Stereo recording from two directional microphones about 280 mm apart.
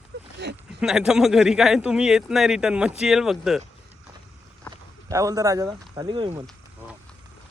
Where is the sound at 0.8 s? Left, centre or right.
Centre.